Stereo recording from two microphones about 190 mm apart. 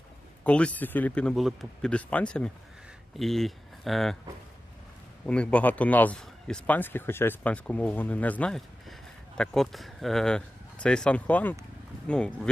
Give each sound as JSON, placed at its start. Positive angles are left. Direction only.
{"t": 0.4, "sound": "a man's voice", "side_deg": 5}
{"t": 5.2, "sound": "a man's voice", "side_deg": 5}